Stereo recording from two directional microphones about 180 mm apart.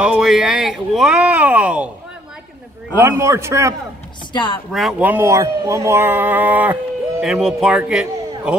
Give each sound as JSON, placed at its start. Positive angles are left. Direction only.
{"t": 0.0, "sound": "speech", "side_deg": -5}
{"t": 3.0, "sound": "speech", "side_deg": -15}
{"t": 4.3, "sound": "speech", "side_deg": 25}
{"t": 4.7, "sound": "speech", "side_deg": -5}